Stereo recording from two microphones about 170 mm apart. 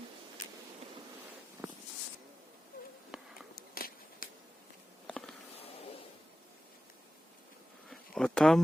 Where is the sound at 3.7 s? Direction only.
60° left (ahead or behind).